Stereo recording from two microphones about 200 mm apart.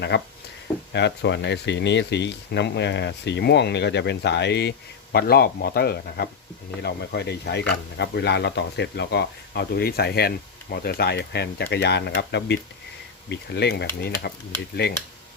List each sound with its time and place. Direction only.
0.9 s speech: 60° left (ahead or behind)